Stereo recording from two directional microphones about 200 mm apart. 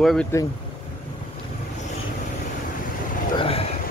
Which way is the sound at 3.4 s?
30° left (ahead or behind).